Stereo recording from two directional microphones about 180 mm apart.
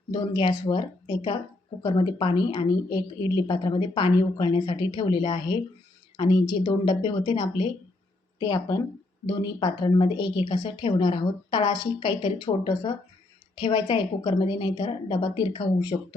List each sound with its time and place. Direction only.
0.1 s a woman's voice: 25° left (ahead or behind)